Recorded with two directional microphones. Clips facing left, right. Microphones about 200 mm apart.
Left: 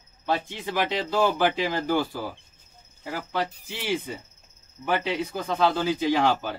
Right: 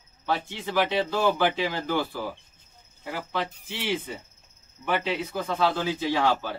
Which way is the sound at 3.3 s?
10° left (ahead or behind).